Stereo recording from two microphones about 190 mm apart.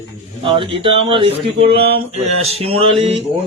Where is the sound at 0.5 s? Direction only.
30° right (ahead or behind).